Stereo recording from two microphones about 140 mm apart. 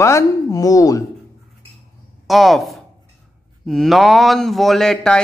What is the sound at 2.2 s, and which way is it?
Speech, centre (ahead or behind).